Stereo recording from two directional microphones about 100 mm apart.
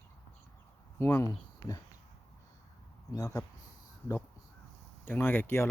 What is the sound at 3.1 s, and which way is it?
Speech, 35° left (ahead or behind).